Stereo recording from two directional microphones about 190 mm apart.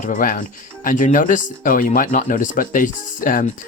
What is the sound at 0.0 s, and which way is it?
Speech, 45° left (ahead or behind).